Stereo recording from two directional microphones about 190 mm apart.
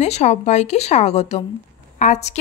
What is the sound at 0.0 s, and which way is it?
A woman's voice, 35° left (ahead or behind).